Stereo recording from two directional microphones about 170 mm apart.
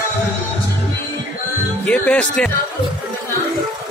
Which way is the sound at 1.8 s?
10° left (ahead or behind).